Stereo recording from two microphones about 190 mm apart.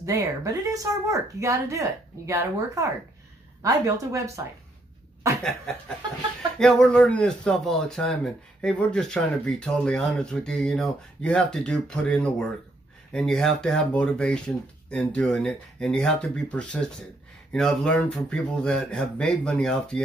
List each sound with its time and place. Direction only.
0.0 s speech: 15° right (ahead or behind)
5.4 s a man's voice: 5° left (ahead or behind)